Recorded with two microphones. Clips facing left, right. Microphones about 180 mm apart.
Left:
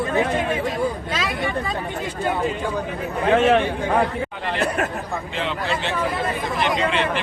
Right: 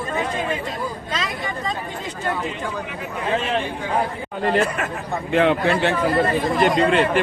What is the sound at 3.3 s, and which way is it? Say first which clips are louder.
Speech: left 7 dB; 75° left (ahead or behind).